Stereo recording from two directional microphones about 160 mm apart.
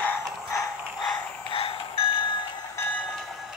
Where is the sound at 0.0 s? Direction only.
15° left (ahead or behind).